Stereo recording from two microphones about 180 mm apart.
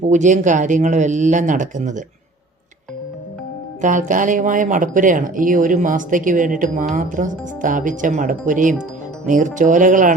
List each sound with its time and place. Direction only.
0.1 s speech: 45° right (ahead or behind)
3.8 s speech: 45° right (ahead or behind)